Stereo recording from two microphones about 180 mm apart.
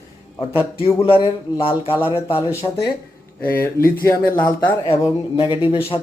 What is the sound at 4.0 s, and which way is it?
Speech, 10° left (ahead or behind).